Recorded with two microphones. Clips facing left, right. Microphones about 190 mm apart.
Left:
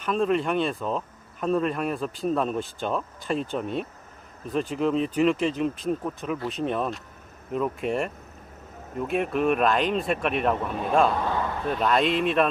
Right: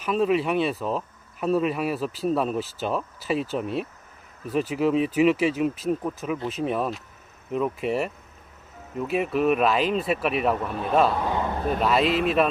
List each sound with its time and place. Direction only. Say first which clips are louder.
0.0 s speech: right 1 dB; 5° right (ahead or behind)
11.3 s a sound: right 1 dB; 20° right (ahead or behind)
11.8 s speech: even; 5° right (ahead or behind)